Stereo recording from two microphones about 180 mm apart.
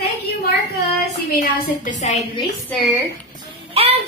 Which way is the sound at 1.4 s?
45° left (ahead or behind).